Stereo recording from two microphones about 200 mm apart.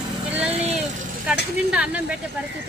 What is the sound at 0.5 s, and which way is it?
Vehicle, 30° right (ahead or behind).